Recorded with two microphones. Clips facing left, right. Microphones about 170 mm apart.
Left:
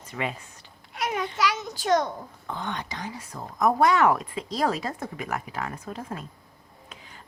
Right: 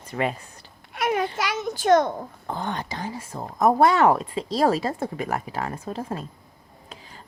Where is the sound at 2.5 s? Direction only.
35° right (ahead or behind).